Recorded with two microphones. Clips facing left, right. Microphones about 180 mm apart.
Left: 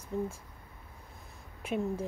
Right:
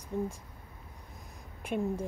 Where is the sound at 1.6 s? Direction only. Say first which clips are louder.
Even; 5° left (ahead or behind).